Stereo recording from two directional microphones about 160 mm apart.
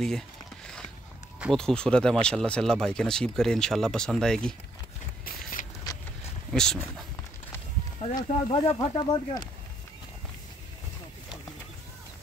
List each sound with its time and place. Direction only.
1.4 s speech: 5° left (ahead or behind)
5.2 s a sound: 60° left (ahead or behind)
6.5 s speech: 5° left (ahead or behind)
8.2 s speech: 35° left (ahead or behind)